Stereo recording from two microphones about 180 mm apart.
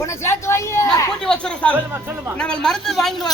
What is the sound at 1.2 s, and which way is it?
Speech, 5° left (ahead or behind).